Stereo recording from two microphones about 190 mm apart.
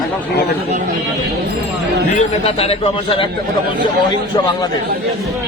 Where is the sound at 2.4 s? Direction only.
30° left (ahead or behind).